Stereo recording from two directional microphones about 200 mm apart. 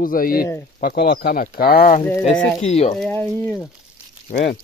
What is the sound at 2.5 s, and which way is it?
Speech, 35° left (ahead or behind).